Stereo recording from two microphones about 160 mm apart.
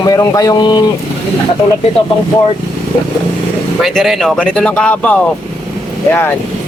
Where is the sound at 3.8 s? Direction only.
Centre (ahead or behind).